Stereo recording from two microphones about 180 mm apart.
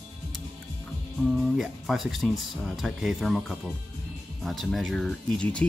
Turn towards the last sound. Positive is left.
turn(degrees=5)  # may be behind; listen again after turning